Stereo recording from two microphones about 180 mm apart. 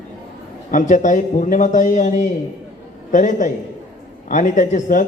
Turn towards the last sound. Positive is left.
turn(degrees=45)  # may be behind; listen again after turning